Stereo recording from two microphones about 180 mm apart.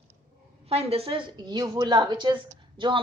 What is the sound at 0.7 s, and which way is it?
A woman's voice, 35° right (ahead or behind).